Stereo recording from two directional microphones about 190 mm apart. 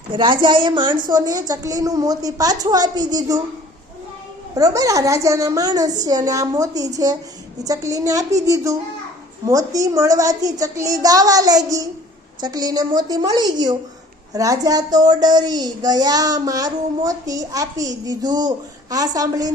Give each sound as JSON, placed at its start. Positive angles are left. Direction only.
{"t": 0.1, "sound": "speech", "side_deg": -25}
{"t": 4.5, "sound": "a woman's voice", "side_deg": -20}